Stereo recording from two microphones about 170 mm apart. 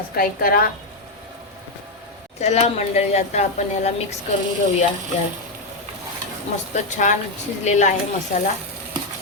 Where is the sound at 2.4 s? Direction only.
40° left (ahead or behind).